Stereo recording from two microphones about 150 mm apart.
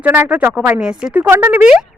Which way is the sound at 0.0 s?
10° right (ahead or behind).